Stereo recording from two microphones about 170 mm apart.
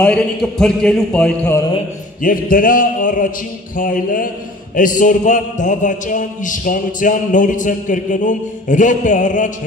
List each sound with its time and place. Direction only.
0.0 s a man's voice: 5° left (ahead or behind)
2.2 s a man's voice: 55° left (ahead or behind)